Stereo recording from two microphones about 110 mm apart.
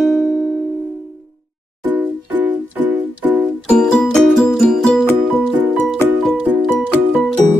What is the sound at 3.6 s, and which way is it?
Music, 5° left (ahead or behind).